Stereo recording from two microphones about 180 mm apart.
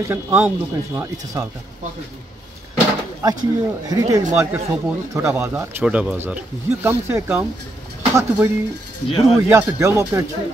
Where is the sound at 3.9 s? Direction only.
20° right (ahead or behind).